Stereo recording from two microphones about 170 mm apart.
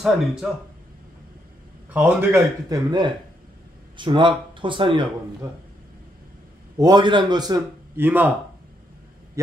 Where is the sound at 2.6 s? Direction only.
25° right (ahead or behind).